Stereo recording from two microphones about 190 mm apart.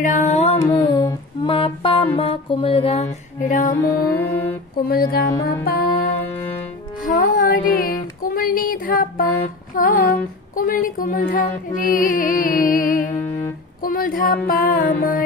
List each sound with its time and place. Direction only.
0.0 s music: 40° left (ahead or behind)
3.7 s music: 15° left (ahead or behind)
4.8 s music: 55° left (ahead or behind)
7.1 s music: 50° left (ahead or behind)